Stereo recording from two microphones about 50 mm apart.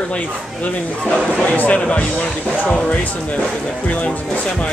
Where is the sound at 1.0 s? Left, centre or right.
Left.